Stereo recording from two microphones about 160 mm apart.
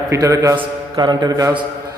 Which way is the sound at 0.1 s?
20° right (ahead or behind).